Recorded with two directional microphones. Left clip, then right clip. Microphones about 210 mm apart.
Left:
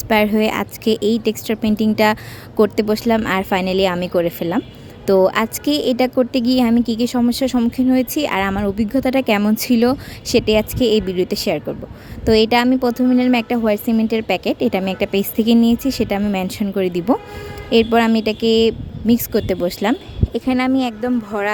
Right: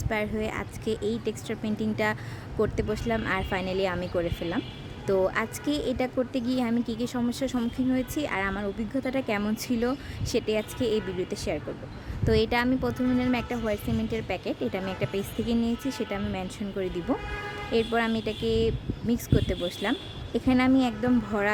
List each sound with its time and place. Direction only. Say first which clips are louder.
0.1 s speech: left 14 dB; 45° left (ahead or behind)